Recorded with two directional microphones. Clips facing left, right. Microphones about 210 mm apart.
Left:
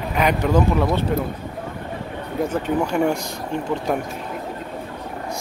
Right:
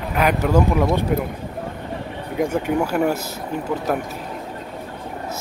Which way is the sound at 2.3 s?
10° right (ahead or behind).